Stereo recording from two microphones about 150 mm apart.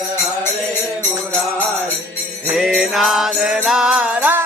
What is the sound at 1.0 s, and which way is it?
Music, 10° left (ahead or behind).